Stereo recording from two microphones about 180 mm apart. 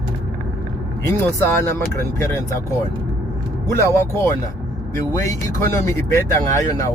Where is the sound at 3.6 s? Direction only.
15° left (ahead or behind).